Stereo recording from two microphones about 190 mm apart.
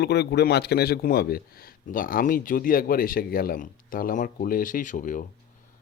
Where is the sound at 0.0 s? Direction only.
60° left (ahead or behind).